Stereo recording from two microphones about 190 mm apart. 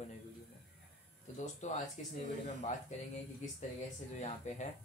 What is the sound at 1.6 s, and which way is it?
Speech, 40° left (ahead or behind).